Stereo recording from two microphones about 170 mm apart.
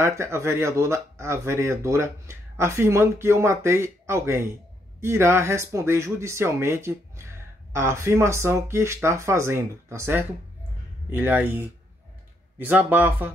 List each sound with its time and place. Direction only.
0.0 s speech: 15° right (ahead or behind)